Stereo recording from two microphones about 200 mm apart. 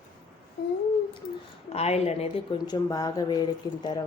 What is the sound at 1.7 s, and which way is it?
Speech, 30° left (ahead or behind).